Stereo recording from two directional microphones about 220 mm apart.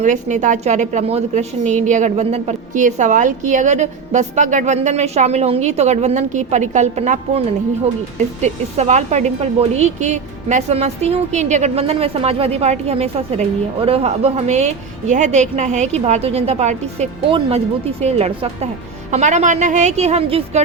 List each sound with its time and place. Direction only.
0.0 s a woman's voice: 35° right (ahead or behind)